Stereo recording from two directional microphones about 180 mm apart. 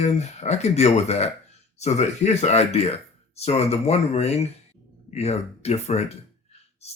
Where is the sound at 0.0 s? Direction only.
40° left (ahead or behind).